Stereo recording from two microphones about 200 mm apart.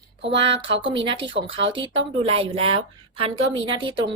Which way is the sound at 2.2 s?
30° right (ahead or behind).